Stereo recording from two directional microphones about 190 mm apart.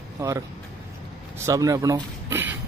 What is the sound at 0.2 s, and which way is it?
Speech, 15° right (ahead or behind).